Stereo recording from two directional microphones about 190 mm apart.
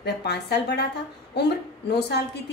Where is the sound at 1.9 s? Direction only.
60° left (ahead or behind).